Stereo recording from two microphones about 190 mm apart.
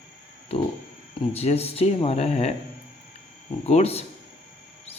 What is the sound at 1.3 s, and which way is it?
Speech, 30° left (ahead or behind).